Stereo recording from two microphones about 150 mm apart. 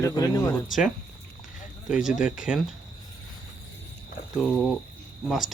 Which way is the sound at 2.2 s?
5° right (ahead or behind).